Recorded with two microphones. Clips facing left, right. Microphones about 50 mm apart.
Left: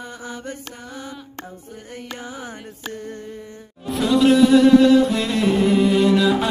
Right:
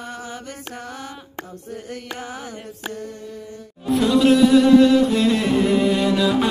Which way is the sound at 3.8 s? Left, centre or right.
Centre.